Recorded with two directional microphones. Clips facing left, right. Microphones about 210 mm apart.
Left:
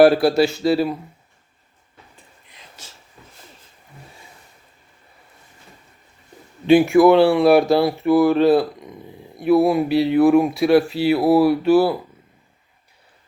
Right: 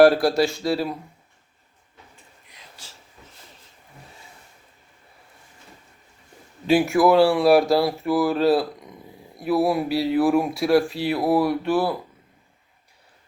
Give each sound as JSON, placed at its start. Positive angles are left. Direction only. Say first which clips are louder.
{"t": 0.0, "sound": "speech", "louder": "left 2 dB", "side_deg": 0}
{"t": 2.8, "sound": "a sound", "louder": "left 4 dB", "side_deg": 20}
{"t": 6.7, "sound": "speech", "louder": "left 5 dB", "side_deg": 0}